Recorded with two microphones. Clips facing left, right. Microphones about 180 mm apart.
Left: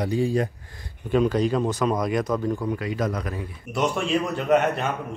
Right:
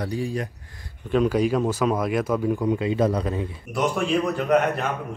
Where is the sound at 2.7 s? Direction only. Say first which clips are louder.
Right 5 dB; 25° right (ahead or behind).